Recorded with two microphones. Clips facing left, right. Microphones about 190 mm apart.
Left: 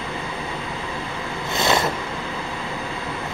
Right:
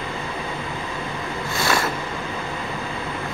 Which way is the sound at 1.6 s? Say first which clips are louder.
Left 2 dB; 20° left (ahead or behind).